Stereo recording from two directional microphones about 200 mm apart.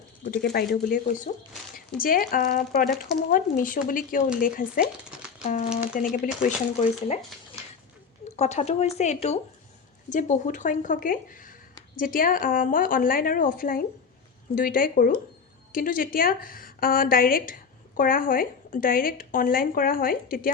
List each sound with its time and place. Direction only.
0.5 s a woman's voice: 50° left (ahead or behind)
8.4 s a woman's voice: 35° left (ahead or behind)